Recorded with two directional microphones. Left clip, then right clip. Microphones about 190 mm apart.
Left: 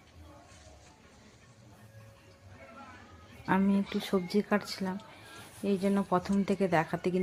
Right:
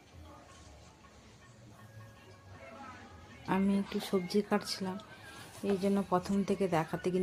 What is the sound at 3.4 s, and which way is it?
Speech, 15° left (ahead or behind).